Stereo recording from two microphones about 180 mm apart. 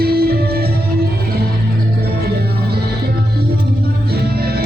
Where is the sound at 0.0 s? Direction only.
60° right (ahead or behind).